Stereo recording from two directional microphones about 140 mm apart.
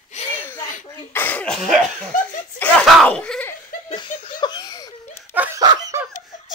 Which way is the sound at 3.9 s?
35° left (ahead or behind).